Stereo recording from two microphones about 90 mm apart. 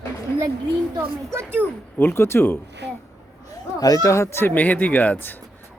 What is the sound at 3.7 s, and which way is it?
Speech, 40° left (ahead or behind).